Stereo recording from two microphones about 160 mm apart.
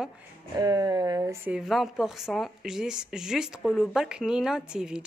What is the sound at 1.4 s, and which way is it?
Speech, 5° right (ahead or behind).